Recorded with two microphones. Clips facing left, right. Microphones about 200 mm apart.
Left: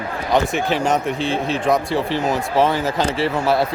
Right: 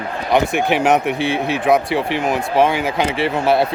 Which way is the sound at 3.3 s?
25° right (ahead or behind).